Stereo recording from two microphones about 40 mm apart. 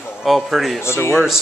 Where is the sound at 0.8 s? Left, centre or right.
Left.